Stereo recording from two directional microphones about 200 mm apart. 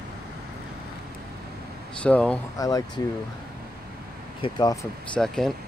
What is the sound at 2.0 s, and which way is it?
Speech, 5° left (ahead or behind).